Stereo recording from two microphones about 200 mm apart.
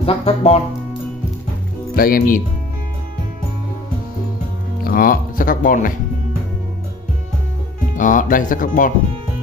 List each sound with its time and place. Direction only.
0.0 s speech: 30° left (ahead or behind)
2.0 s speech: 45° left (ahead or behind)
4.8 s speech: 45° left (ahead or behind)
7.9 s speech: 40° left (ahead or behind)